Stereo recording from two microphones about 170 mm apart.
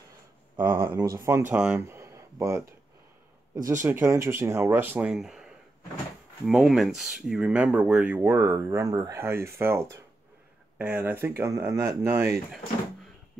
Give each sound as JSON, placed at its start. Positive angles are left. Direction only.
{"t": 0.7, "sound": "speech", "side_deg": -15}
{"t": 3.8, "sound": "speech", "side_deg": -15}